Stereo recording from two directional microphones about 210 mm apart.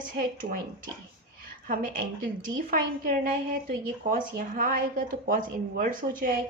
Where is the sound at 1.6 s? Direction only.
40° right (ahead or behind).